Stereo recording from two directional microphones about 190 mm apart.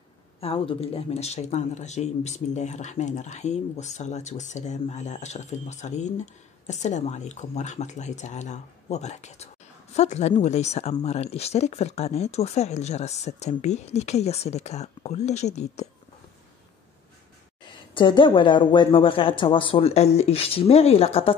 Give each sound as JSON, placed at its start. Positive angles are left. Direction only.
{"t": 0.4, "sound": "speech", "side_deg": 30}
{"t": 17.9, "sound": "a woman's voice", "side_deg": 25}